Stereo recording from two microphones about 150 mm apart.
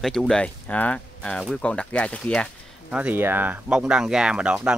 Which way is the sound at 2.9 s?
10° right (ahead or behind).